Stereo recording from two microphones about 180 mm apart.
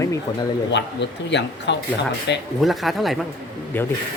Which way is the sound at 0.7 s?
75° left (ahead or behind).